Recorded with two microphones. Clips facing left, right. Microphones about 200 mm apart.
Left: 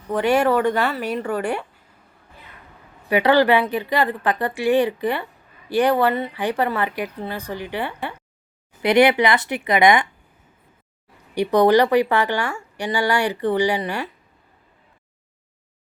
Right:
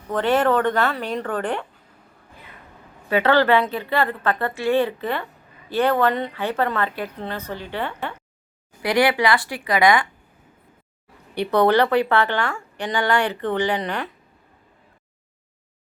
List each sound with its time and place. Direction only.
0.1 s a woman's voice: 10° left (ahead or behind)
3.1 s a woman's voice: 15° left (ahead or behind)
11.3 s a woman's voice: 15° left (ahead or behind)